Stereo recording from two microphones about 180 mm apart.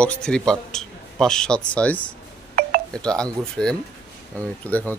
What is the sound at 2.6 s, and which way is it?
Telephone dialing, 55° right (ahead or behind).